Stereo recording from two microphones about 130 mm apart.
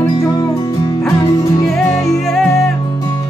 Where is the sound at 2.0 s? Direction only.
Centre (ahead or behind).